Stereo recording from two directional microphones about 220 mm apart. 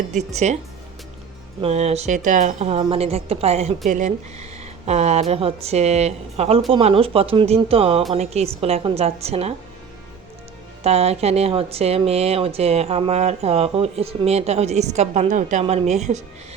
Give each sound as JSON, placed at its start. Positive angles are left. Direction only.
{"t": 0.1, "sound": "speech", "side_deg": -30}
{"t": 1.6, "sound": "speech", "side_deg": -30}
{"t": 10.8, "sound": "speech", "side_deg": -30}